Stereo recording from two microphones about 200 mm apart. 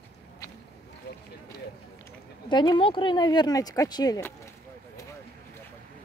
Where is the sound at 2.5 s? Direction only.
25° left (ahead or behind).